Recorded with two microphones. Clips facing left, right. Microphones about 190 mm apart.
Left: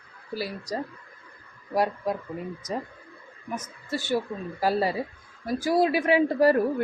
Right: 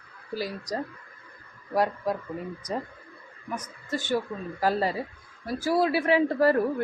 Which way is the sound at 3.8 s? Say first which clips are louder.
Left 1 dB; 10° left (ahead or behind).